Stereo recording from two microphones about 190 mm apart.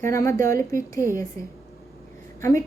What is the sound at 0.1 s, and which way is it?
A woman's voice, 15° left (ahead or behind).